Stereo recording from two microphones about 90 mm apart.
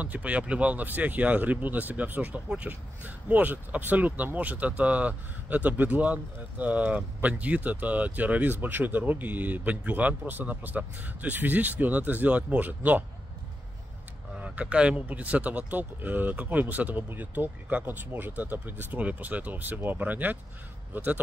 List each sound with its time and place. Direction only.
0.0 s speech: 15° right (ahead or behind)
14.3 s speech: 15° right (ahead or behind)